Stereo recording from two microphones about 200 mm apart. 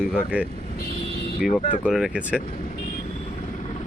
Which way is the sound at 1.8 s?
5° right (ahead or behind).